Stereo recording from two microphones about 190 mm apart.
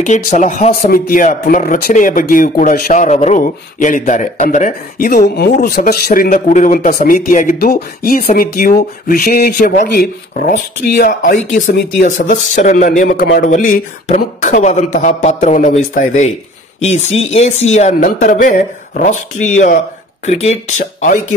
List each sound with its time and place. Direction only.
0.0 s speech: 40° left (ahead or behind)